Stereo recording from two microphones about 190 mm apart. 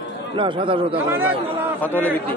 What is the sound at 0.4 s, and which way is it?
Speech, 25° right (ahead or behind).